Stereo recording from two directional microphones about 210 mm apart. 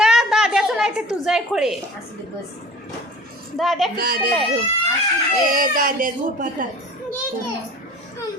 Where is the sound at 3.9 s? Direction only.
45° right (ahead or behind).